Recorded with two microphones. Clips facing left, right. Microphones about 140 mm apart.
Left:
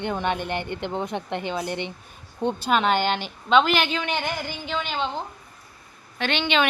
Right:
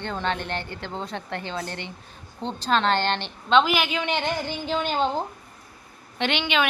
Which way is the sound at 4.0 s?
20° right (ahead or behind).